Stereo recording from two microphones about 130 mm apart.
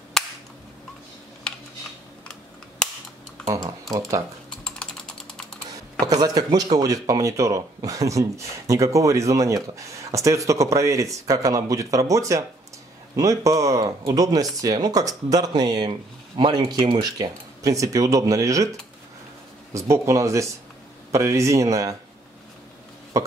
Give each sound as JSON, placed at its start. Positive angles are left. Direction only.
{"t": 0.2, "sound": "cap gun", "side_deg": 5}
{"t": 3.4, "sound": "speech", "side_deg": -25}
{"t": 4.5, "sound": "typing", "side_deg": 5}
{"t": 6.2, "sound": "speech", "side_deg": -30}
{"t": 19.9, "sound": "speech", "side_deg": -25}